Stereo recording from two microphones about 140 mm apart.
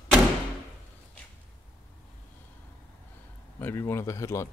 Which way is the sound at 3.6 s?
15° left (ahead or behind).